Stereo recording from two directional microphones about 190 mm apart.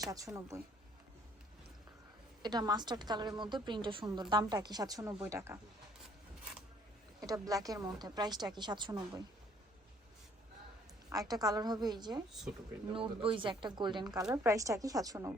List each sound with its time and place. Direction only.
0.0 s a woman's voice: 20° right (ahead or behind)
2.4 s a woman's voice: 20° right (ahead or behind)
7.2 s a woman's voice: 20° right (ahead or behind)
11.1 s a woman's voice: 20° right (ahead or behind)
12.3 s speech: centre (ahead or behind)
12.9 s a woman's voice: 30° right (ahead or behind)